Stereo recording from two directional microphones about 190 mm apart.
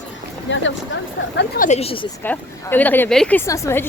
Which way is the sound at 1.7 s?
30° left (ahead or behind).